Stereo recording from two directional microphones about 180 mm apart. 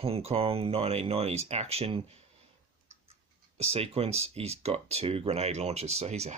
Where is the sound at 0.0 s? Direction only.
35° right (ahead or behind).